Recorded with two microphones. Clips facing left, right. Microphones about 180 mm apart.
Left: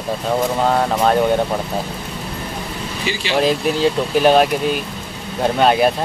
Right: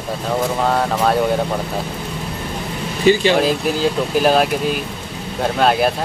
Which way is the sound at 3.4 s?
Centre (ahead or behind).